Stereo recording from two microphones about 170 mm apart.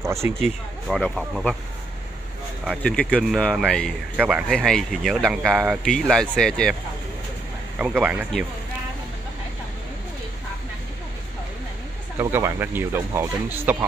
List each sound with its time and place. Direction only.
0.0 s speech: 15° right (ahead or behind)
0.4 s speech: centre (ahead or behind)
2.8 s speech: 5° left (ahead or behind)
7.8 s speech: 10° right (ahead or behind)
12.2 s speech: 15° right (ahead or behind)